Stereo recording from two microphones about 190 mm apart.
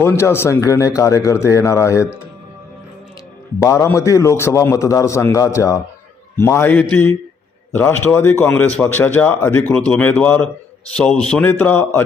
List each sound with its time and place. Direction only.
0.0 s a man's voice: 10° left (ahead or behind)
3.6 s a man's voice: 15° left (ahead or behind)